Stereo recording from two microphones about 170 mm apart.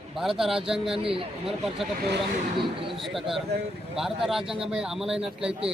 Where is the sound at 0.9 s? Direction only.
30° right (ahead or behind).